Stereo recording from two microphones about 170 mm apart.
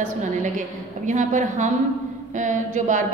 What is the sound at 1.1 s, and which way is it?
A woman's voice, 50° right (ahead or behind).